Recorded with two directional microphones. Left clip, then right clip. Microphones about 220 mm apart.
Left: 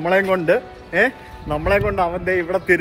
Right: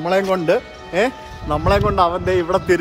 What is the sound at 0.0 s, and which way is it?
A man's voice, 15° right (ahead or behind).